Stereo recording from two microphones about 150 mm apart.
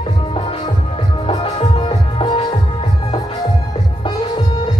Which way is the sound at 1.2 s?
40° left (ahead or behind).